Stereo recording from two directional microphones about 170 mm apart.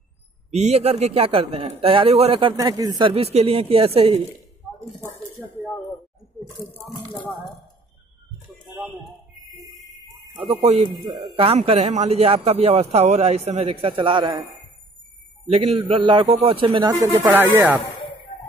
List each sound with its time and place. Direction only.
0.5 s a man's voice: 40° right (ahead or behind)
5.0 s dishes: 10° left (ahead or behind)
10.3 s a man's voice: 35° right (ahead or behind)
15.5 s a man's voice: 35° right (ahead or behind); by 17.8 s 10° right (ahead or behind)